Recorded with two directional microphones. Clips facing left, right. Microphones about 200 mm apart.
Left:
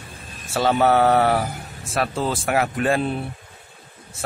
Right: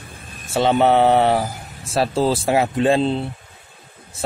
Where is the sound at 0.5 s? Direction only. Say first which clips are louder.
Right 2 dB; 20° right (ahead or behind).